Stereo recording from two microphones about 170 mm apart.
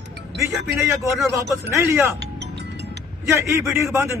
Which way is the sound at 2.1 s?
90° right.